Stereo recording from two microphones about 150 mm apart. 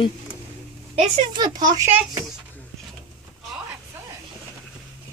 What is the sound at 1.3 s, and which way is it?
Speech, 25° right (ahead or behind).